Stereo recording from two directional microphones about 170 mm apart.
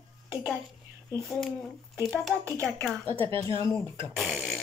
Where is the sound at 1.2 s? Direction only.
Centre (ahead or behind).